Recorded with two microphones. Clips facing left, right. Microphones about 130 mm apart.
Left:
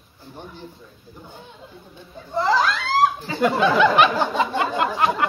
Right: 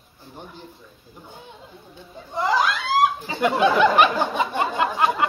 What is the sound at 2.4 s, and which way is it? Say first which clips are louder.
Speech: left 2 dB; 15° right (ahead or behind).